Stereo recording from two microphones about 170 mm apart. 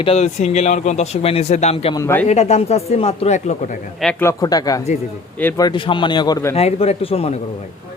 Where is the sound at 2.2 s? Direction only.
40° left (ahead or behind).